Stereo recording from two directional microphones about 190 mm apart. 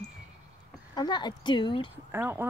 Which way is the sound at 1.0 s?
25° left (ahead or behind).